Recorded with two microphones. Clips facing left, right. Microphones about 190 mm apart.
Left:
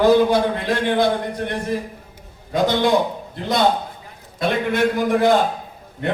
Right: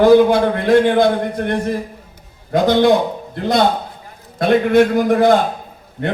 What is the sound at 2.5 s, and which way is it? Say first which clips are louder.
Speech: right 5 dB; 55° right (ahead or behind).